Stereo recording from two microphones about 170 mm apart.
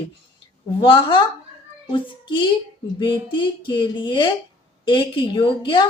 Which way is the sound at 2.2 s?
25° left (ahead or behind).